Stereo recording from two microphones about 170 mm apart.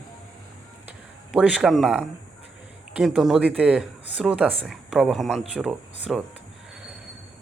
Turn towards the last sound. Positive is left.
turn(degrees=-5)  # may be behind; listen again after turning